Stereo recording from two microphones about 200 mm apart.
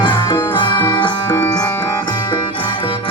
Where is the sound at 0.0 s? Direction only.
25° left (ahead or behind).